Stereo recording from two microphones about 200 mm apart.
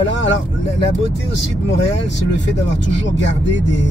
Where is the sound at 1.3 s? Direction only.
60° left (ahead or behind).